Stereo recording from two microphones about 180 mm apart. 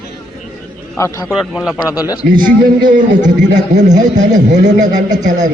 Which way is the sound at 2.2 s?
50° right (ahead or behind).